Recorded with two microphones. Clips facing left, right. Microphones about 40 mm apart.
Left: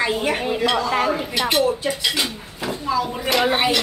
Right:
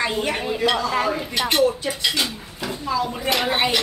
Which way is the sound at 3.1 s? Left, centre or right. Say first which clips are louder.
Left 2 dB; centre.